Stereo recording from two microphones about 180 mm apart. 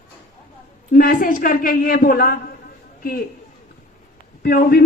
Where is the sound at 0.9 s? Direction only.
50° left (ahead or behind).